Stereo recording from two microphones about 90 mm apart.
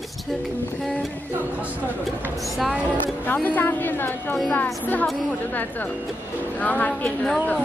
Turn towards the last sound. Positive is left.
turn(degrees=15)  # may be behind; listen again after turning